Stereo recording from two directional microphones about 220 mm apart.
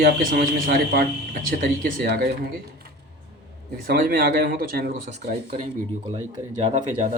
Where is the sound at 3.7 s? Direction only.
40° right (ahead or behind).